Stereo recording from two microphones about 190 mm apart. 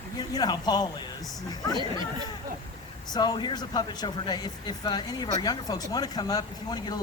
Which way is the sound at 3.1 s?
20° left (ahead or behind).